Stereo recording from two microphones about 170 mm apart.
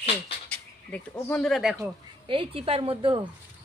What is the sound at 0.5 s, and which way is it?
Speech, 5° left (ahead or behind).